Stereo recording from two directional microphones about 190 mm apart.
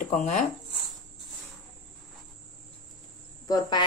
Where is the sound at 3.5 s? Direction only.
25° left (ahead or behind).